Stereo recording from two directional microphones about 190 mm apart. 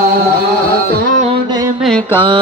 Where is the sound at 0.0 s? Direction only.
50° right (ahead or behind).